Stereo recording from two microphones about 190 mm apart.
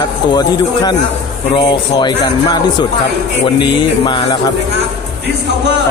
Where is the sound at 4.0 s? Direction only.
25° left (ahead or behind).